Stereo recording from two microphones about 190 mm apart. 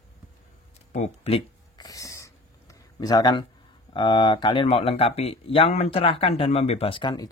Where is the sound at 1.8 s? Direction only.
20° left (ahead or behind).